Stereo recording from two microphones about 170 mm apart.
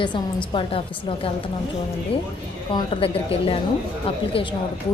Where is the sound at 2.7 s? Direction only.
35° left (ahead or behind).